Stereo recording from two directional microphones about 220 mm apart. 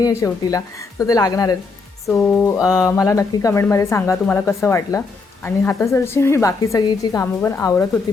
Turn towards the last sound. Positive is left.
turn(degrees=15)  # may be behind; listen again after turning